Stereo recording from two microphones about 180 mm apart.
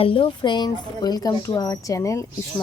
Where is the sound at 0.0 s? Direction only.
30° left (ahead or behind).